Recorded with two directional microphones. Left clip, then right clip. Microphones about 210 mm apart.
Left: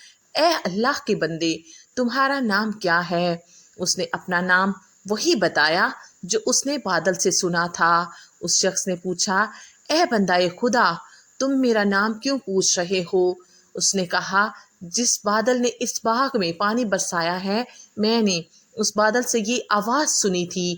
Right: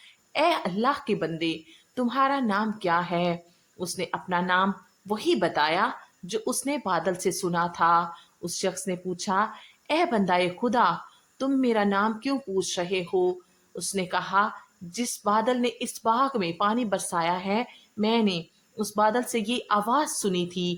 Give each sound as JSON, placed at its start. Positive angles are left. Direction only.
{"t": 0.0, "sound": "a woman's voice", "side_deg": 20}